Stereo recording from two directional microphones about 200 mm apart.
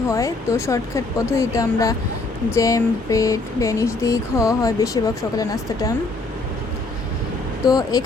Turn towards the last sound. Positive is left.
turn(degrees=20)  # may be behind; listen again after turning